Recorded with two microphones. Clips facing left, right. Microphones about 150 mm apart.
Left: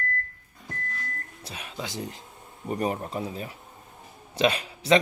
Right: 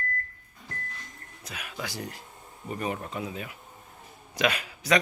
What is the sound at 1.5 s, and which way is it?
Speech, 30° left (ahead or behind).